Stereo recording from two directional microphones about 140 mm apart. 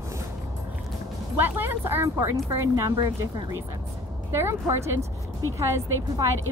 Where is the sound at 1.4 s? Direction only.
15° right (ahead or behind).